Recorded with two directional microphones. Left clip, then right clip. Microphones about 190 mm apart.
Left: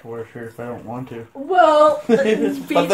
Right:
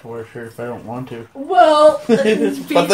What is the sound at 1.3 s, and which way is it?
Speech, 15° left (ahead or behind).